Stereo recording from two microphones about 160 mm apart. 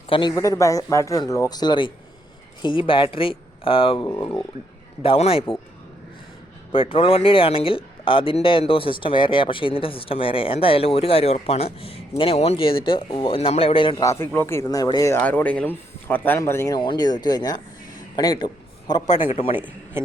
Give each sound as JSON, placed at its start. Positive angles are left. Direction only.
{"t": 0.1, "sound": "speech", "side_deg": 25}
{"t": 6.7, "sound": "speech", "side_deg": 35}
{"t": 15.2, "sound": "a man's voice", "side_deg": 10}